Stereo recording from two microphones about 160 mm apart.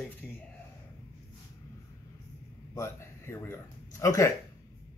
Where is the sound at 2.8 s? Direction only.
15° left (ahead or behind).